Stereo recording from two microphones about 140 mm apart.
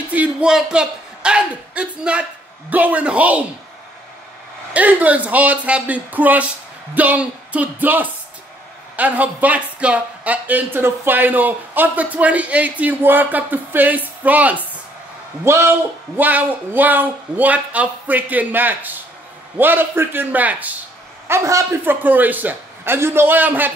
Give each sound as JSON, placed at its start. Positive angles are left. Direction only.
{"t": 0.1, "sound": "a man's voice", "side_deg": -10}
{"t": 4.7, "sound": "speech", "side_deg": -10}
{"t": 21.3, "sound": "speech", "side_deg": -20}